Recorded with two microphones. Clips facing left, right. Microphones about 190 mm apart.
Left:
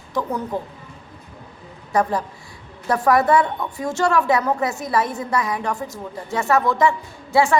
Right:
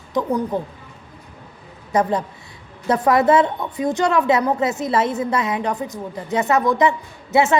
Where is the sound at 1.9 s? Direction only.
20° right (ahead or behind).